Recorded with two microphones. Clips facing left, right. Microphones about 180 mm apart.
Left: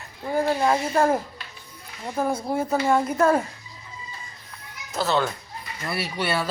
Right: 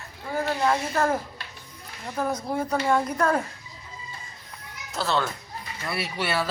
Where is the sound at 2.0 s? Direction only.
10° left (ahead or behind).